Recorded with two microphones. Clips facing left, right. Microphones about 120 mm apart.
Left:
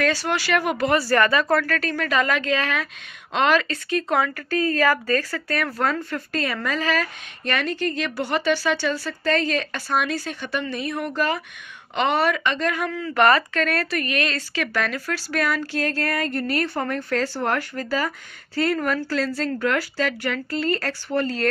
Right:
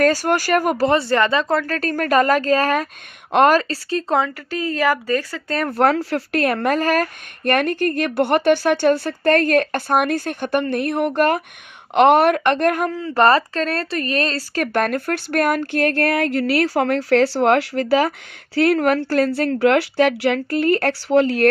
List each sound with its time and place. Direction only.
0.0 s speech: 45° right (ahead or behind); by 1.8 s 20° right (ahead or behind)
1.8 s a woman's voice: 45° right (ahead or behind)
4.5 s speech: 15° right (ahead or behind)
5.5 s speech: 30° right (ahead or behind)
5.8 s speech: 75° right (ahead or behind); by 12.9 s 55° right (ahead or behind)
12.9 s speech: 30° right (ahead or behind); by 21.5 s 75° right (ahead or behind)